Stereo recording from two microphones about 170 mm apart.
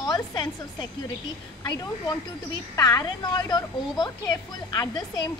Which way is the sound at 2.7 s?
25° left (ahead or behind).